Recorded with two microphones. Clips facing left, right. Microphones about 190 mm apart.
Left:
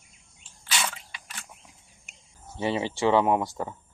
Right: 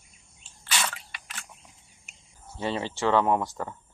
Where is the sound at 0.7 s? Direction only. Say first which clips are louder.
Even; 10° left (ahead or behind).